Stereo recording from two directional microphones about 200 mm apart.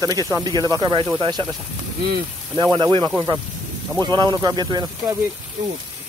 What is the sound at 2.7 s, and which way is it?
Speech, 20° right (ahead or behind).